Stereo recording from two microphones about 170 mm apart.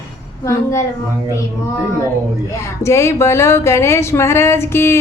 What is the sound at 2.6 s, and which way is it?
Speech, 15° left (ahead or behind).